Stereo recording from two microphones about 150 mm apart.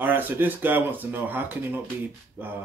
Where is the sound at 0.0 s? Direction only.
15° right (ahead or behind).